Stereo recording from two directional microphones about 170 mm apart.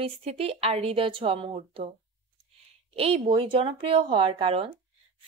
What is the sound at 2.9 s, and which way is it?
Speech, 35° right (ahead or behind).